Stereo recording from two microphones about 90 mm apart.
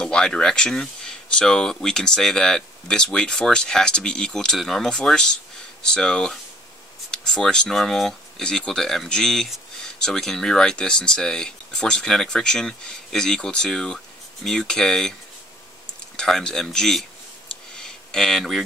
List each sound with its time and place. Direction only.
0.0 s speech: 10° left (ahead or behind)
16.2 s speech: 5° left (ahead or behind)
17.5 s a sound: 5° left (ahead or behind)